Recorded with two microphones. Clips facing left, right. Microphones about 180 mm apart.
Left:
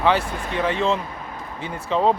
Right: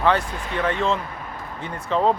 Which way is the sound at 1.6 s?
5° left (ahead or behind).